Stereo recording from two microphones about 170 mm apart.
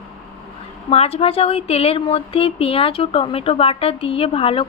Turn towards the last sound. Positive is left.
turn(degrees=35)  # may be behind; listen again after turning